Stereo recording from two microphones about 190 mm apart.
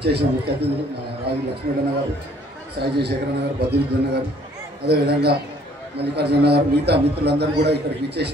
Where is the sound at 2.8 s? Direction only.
60° right (ahead or behind).